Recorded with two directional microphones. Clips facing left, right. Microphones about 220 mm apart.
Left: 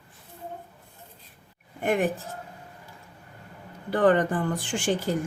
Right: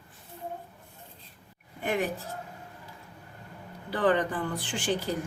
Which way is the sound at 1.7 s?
50° left (ahead or behind).